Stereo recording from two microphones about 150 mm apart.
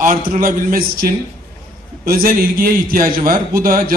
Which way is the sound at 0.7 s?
75° right (ahead or behind).